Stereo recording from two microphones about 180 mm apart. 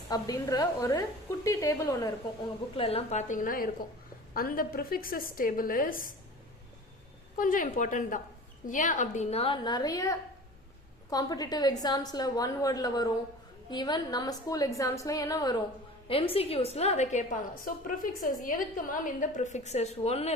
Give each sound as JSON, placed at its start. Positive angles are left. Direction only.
{"t": 0.1, "sound": "a woman's voice", "side_deg": 20}
{"t": 2.7, "sound": "a woman's voice", "side_deg": 35}
{"t": 7.3, "sound": "a woman's voice", "side_deg": 45}
{"t": 16.0, "sound": "a woman's voice", "side_deg": 30}